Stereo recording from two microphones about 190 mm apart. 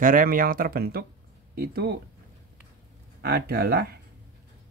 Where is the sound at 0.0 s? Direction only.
45° right (ahead or behind).